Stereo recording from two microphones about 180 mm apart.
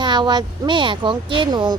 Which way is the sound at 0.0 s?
25° right (ahead or behind).